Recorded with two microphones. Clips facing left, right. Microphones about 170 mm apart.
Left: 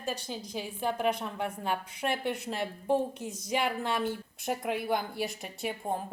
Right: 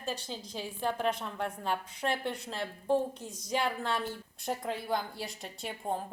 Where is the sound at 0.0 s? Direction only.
15° left (ahead or behind).